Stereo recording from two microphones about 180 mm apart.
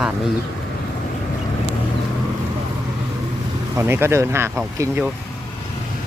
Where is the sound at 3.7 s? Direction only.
15° right (ahead or behind).